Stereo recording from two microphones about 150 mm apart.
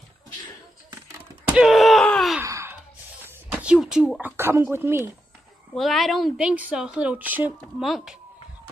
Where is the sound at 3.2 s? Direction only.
10° right (ahead or behind).